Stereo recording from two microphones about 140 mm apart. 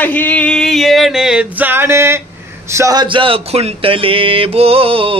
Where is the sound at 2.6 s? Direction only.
20° right (ahead or behind); by 5.1 s 40° right (ahead or behind).